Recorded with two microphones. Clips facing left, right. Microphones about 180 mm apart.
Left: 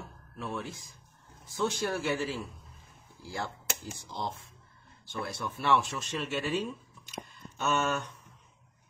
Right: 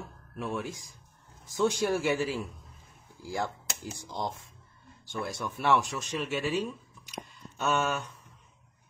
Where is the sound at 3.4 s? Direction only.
15° right (ahead or behind).